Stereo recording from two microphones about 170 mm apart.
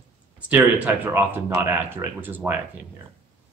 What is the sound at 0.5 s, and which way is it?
Speech, 10° right (ahead or behind).